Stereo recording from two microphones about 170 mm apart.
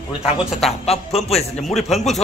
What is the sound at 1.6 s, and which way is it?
Speech, centre (ahead or behind).